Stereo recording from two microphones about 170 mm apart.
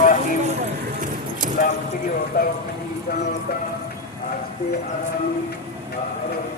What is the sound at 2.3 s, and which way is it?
Speech, 60° left (ahead or behind).